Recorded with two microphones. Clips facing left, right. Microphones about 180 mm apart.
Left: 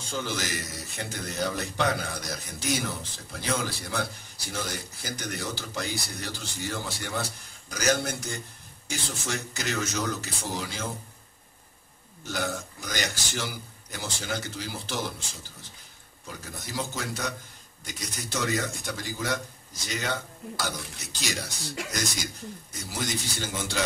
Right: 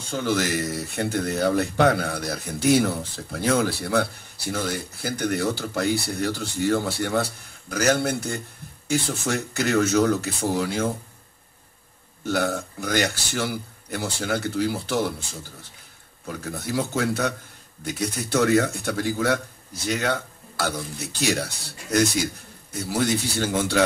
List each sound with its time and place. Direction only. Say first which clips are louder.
0.1 s speech: right 8 dB; 55° right (ahead or behind)
12.3 s speech: right 7 dB; 60° right (ahead or behind)
16.3 s speech: right 10 dB; 60° right (ahead or behind)
21.8 s speech: right 5 dB; 90° left
22.7 s speech: right 10 dB; 60° right (ahead or behind)